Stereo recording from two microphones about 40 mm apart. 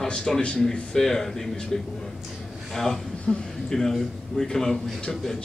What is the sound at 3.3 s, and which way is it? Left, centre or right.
A man's voice, centre.